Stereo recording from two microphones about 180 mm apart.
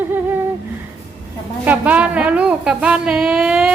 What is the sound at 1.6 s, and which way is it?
A woman's voice, 10° right (ahead or behind).